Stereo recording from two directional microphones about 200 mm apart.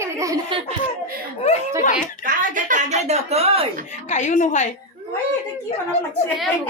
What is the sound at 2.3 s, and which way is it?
A woman's voice, 40° right (ahead or behind).